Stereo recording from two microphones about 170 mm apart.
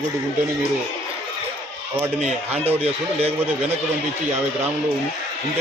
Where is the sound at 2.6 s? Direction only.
35° right (ahead or behind).